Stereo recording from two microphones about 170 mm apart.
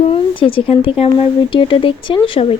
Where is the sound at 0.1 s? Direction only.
30° left (ahead or behind).